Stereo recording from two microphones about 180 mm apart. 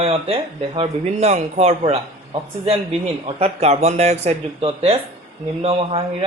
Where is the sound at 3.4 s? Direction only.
35° right (ahead or behind).